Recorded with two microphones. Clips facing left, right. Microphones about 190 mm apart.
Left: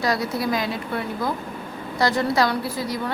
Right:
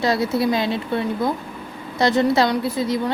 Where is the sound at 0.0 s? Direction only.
25° right (ahead or behind).